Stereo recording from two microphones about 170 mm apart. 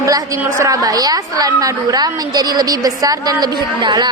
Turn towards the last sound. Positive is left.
turn(degrees=-25)  # may be behind; listen again after turning